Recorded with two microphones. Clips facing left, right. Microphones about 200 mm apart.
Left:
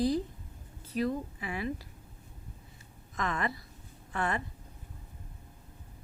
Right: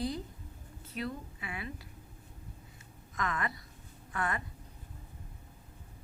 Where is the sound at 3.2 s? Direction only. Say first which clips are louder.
Left 3 dB; 30° left (ahead or behind).